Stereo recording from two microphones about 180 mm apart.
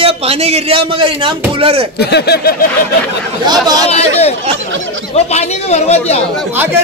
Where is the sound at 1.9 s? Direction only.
65° left (ahead or behind).